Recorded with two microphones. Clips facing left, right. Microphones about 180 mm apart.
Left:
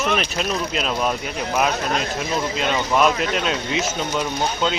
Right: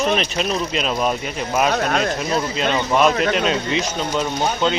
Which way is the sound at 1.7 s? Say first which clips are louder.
Right 4 dB; 55° right (ahead or behind).